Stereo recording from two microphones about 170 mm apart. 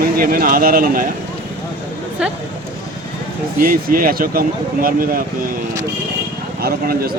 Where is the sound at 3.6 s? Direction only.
55° right (ahead or behind).